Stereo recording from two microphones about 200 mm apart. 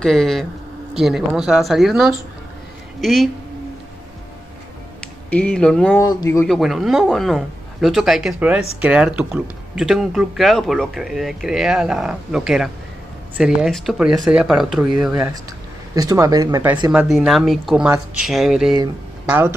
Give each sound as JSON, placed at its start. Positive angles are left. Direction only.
{"t": 0.0, "sound": "speech", "side_deg": 0}
{"t": 5.3, "sound": "speech", "side_deg": 5}
{"t": 5.9, "sound": "speech", "side_deg": 15}
{"t": 6.4, "sound": "speech", "side_deg": 0}
{"t": 15.9, "sound": "speech", "side_deg": -15}